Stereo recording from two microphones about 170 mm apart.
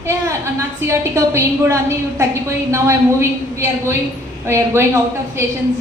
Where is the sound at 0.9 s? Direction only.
15° right (ahead or behind).